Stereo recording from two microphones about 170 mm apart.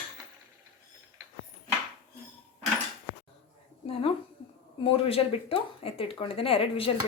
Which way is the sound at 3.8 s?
35° left (ahead or behind).